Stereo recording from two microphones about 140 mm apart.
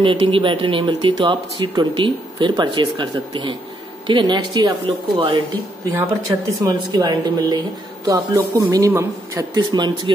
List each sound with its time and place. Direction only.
0.0 s speech: 35° right (ahead or behind)
5.9 s speech: 25° right (ahead or behind)